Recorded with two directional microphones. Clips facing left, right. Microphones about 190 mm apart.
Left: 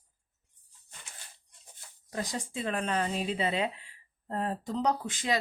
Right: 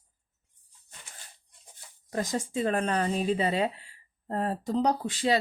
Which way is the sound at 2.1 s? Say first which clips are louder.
Right 5 dB; 45° right (ahead or behind).